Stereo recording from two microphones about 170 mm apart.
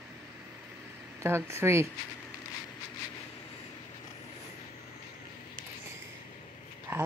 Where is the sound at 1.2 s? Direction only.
15° right (ahead or behind).